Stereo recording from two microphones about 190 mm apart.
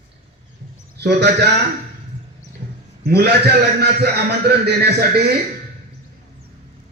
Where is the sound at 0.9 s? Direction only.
60° right (ahead or behind).